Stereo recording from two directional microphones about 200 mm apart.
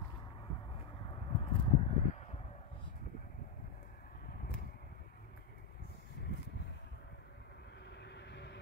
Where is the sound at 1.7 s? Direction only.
35° left (ahead or behind).